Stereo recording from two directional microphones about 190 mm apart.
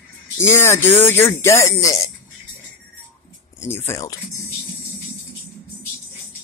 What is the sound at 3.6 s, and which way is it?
Speech, 10° left (ahead or behind).